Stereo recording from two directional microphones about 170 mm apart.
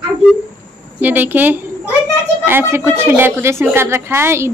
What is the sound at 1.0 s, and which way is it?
A woman's voice, 10° right (ahead or behind).